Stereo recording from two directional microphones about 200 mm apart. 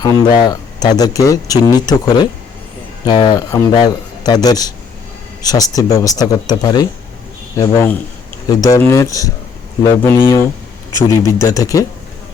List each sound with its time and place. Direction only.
0.0 s speech: 20° left (ahead or behind)
3.1 s speech: 20° left (ahead or behind)